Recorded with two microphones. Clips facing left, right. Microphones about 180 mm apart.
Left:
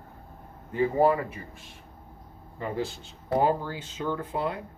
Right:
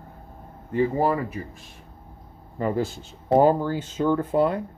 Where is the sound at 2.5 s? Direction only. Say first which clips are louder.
Right 6 dB; 45° right (ahead or behind).